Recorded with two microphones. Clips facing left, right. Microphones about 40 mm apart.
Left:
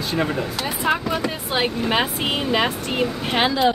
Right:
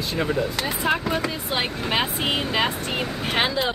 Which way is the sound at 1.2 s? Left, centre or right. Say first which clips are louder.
Left 3 dB; centre.